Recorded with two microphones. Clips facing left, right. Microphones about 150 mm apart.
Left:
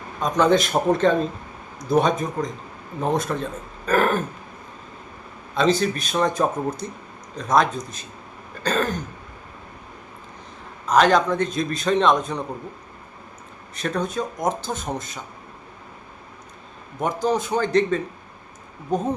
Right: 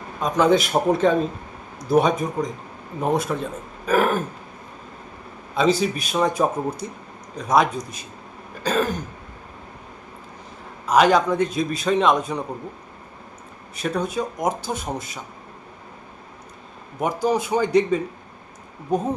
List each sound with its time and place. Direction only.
0.2 s a man's voice: 5° right (ahead or behind)
5.5 s a man's voice: 5° right (ahead or behind)
10.8 s a man's voice: 10° right (ahead or behind)
13.7 s a man's voice: 10° right (ahead or behind)
17.0 s a man's voice: 10° right (ahead or behind)